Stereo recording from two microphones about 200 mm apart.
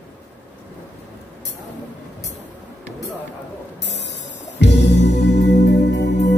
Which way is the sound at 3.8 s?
60° left (ahead or behind).